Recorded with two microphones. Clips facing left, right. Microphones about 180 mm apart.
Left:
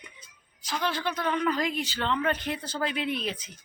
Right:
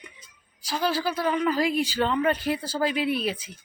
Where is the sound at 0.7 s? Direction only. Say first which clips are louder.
Right 4 dB; 35° right (ahead or behind).